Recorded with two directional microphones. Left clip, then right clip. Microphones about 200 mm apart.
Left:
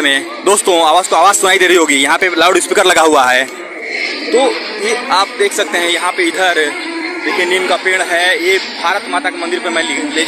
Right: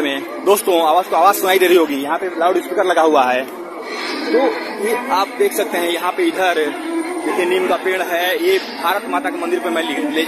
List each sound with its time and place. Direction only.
0.0 s a man's voice: 10° left (ahead or behind)
2.1 s speech: 35° left (ahead or behind)
2.8 s speech: 25° left (ahead or behind)
5.1 s a man's voice: centre (ahead or behind)